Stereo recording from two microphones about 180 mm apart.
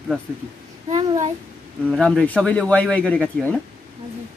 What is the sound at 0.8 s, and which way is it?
Babbling, 25° right (ahead or behind).